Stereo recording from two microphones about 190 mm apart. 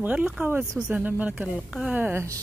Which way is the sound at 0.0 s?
10° right (ahead or behind).